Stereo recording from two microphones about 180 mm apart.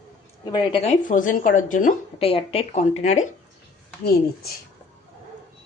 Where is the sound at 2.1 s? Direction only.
30° left (ahead or behind).